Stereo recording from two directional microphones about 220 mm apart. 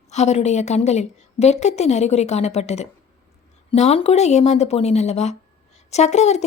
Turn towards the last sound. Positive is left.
turn(degrees=30)  # may be behind; listen again after turning